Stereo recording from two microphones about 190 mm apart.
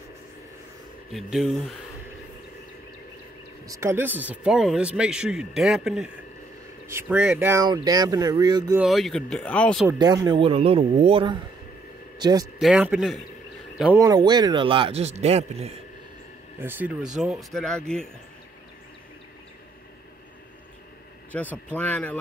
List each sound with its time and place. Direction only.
1.1 s speech: centre (ahead or behind)
3.6 s speech: 15° right (ahead or behind)
8.7 s speech: centre (ahead or behind)
9.8 s speech: 20° right (ahead or behind)
12.5 s speech: 5° right (ahead or behind)
13.9 s speech: 20° right (ahead or behind)
16.6 s speech: 10° right (ahead or behind)
21.3 s speech: 10° left (ahead or behind)